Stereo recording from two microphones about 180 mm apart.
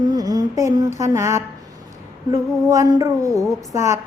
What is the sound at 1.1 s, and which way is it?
Mantra, 15° right (ahead or behind).